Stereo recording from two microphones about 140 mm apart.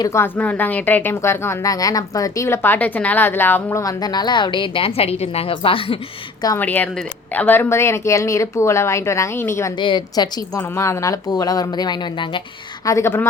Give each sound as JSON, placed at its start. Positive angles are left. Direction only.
{"t": 0.0, "sound": "a woman's voice", "side_deg": 20}
{"t": 6.6, "sound": "a woman's voice", "side_deg": 10}
{"t": 9.7, "sound": "a woman's voice", "side_deg": 35}
{"t": 12.8, "sound": "a woman's voice", "side_deg": 20}